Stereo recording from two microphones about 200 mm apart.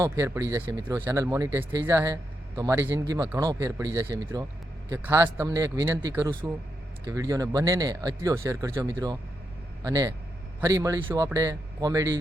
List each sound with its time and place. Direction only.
0.0 s speech: 15° right (ahead or behind)